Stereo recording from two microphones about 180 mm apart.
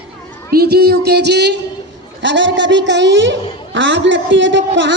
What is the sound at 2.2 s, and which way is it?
A man's voice, 85° right.